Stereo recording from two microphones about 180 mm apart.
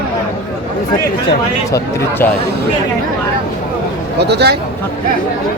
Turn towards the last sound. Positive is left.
turn(degrees=-65)  # may be behind; listen again after turning